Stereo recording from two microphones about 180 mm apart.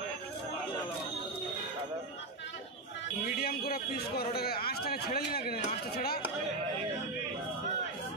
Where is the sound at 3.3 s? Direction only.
55° left (ahead or behind).